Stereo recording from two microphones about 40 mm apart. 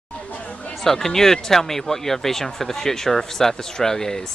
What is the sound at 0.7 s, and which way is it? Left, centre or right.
Speech, centre.